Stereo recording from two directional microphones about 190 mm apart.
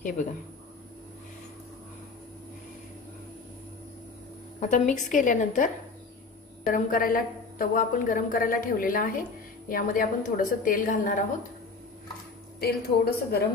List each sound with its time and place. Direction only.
4.6 s a woman's voice: 40° left (ahead or behind)
12.5 s a woman's voice: 55° left (ahead or behind)